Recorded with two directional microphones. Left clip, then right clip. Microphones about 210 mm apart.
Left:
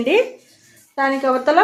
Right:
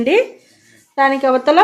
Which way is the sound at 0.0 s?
30° right (ahead or behind).